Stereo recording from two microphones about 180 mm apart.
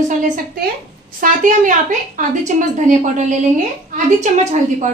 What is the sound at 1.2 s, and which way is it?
A woman's voice, 45° right (ahead or behind).